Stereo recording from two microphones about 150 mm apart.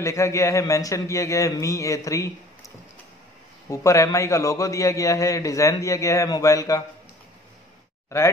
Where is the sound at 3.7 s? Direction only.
20° left (ahead or behind).